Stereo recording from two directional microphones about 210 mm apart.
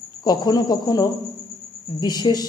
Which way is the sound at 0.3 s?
20° left (ahead or behind).